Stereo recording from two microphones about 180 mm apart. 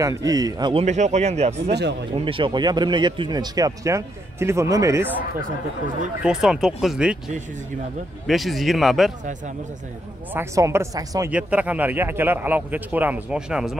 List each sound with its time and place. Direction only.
0.0 s speech: 20° right (ahead or behind)
0.8 s speech: 40° right (ahead or behind)
1.7 s speech: 70° right (ahead or behind)
2.1 s speech: 30° right (ahead or behind)
6.2 s speech: 5° right (ahead or behind)
10.3 s speech: 15° right (ahead or behind)